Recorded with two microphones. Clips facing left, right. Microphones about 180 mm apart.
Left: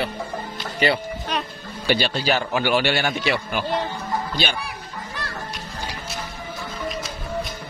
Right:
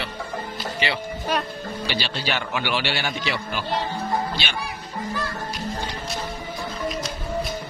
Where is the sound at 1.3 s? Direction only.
5° right (ahead or behind).